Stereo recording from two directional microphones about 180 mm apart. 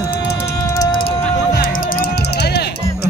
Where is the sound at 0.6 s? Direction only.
20° left (ahead or behind).